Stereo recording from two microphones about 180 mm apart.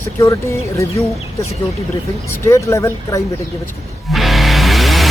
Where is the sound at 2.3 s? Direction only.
15° left (ahead or behind).